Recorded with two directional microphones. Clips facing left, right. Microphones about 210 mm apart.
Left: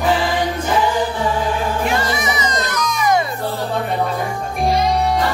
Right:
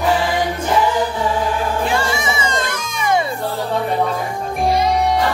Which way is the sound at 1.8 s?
30° right (ahead or behind).